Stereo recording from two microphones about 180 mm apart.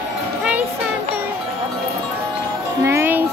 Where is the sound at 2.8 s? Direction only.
15° right (ahead or behind).